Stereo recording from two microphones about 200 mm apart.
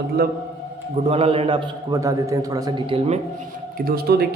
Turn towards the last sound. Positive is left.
turn(degrees=-50)  # may be behind; listen again after turning